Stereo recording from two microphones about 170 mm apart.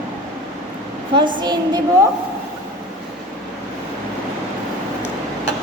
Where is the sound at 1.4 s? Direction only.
25° right (ahead or behind).